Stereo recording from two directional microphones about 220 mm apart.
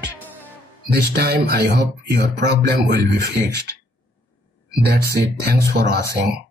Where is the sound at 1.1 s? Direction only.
45° right (ahead or behind).